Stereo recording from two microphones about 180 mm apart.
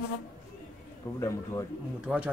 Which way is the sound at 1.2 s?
15° left (ahead or behind).